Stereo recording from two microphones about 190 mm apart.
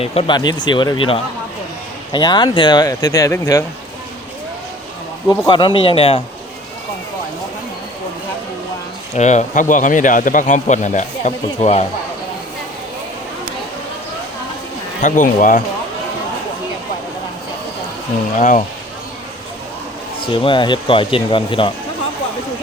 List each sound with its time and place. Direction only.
0.0 s speech: 30° left (ahead or behind)
5.5 s speech: 25° left (ahead or behind)
9.1 s speech: 40° left (ahead or behind)
15.0 s speech: 45° left (ahead or behind)
18.3 s speech: 40° left (ahead or behind)
20.2 s speech: 25° left (ahead or behind)